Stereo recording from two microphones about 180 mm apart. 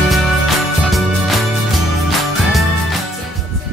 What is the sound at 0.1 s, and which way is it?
Music, centre (ahead or behind).